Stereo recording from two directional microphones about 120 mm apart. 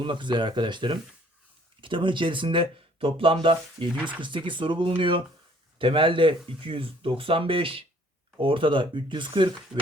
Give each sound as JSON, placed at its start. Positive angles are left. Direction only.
{"t": 0.0, "sound": "speech", "side_deg": -40}